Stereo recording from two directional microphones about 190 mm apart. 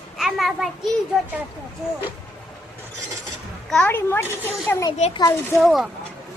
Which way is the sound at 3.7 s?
5° left (ahead or behind).